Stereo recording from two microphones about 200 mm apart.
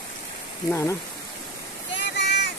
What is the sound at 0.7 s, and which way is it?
Speech, 15° left (ahead or behind).